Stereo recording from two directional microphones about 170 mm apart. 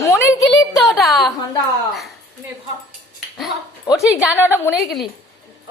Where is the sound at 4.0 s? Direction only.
10° right (ahead or behind).